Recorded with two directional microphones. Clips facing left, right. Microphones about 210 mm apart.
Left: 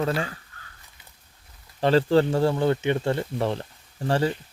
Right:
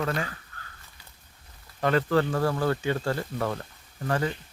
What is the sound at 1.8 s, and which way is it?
A man's voice, 30° left (ahead or behind).